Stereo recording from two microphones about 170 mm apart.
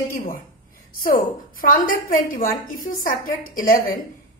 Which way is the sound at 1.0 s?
55° left (ahead or behind).